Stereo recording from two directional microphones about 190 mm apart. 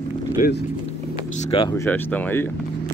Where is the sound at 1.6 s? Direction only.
15° left (ahead or behind).